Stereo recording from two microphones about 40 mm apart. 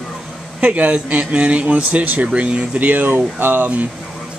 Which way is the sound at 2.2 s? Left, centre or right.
Right.